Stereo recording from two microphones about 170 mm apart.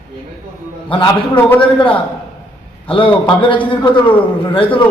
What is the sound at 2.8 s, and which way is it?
A man's voice, 30° left (ahead or behind).